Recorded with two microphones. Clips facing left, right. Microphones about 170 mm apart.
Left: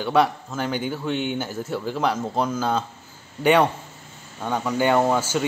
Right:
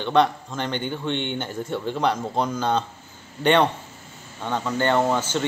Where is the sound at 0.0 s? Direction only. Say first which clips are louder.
Even; 5° left (ahead or behind).